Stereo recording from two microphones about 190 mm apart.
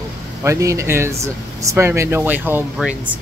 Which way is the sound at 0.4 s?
15° right (ahead or behind).